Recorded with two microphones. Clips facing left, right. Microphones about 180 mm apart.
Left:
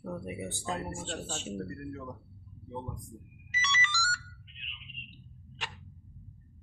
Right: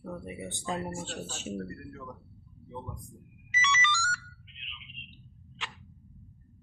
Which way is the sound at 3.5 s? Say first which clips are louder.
Right 4 dB; 40° left (ahead or behind).